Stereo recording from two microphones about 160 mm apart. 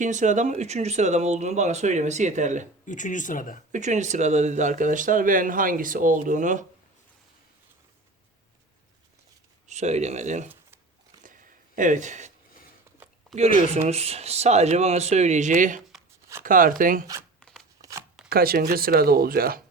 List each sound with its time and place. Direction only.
0.0 s speech: 50° right (ahead or behind)
2.8 s speech: 50° left (ahead or behind)
3.7 s speech: 50° right (ahead or behind)
9.6 s speech: 45° right (ahead or behind)
11.8 s speech: 50° right (ahead or behind)
13.6 s speech: 45° right (ahead or behind)
17.4 s shuffling cards: centre (ahead or behind)
18.3 s speech: 70° right (ahead or behind)